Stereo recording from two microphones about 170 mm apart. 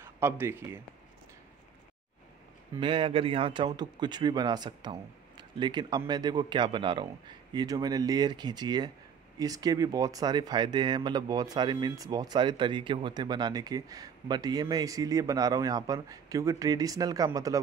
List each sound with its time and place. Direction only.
0.0 s speech: 15° right (ahead or behind)
2.7 s speech: 30° right (ahead or behind)